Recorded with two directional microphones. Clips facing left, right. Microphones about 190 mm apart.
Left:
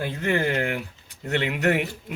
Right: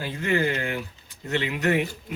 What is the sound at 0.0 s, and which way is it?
A man's voice, 60° left (ahead or behind).